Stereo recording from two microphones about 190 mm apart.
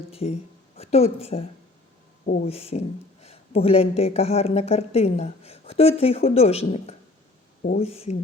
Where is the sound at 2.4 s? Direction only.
30° left (ahead or behind).